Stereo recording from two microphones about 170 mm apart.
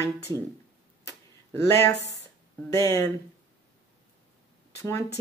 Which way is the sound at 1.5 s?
15° left (ahead or behind).